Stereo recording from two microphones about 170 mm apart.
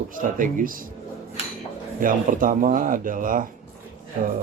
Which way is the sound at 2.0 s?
55° right (ahead or behind).